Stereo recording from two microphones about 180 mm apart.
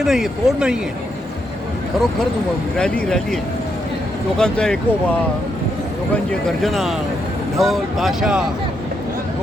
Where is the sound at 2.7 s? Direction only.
5° left (ahead or behind).